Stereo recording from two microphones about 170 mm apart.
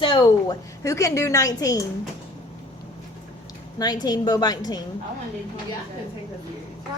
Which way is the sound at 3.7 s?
25° left (ahead or behind).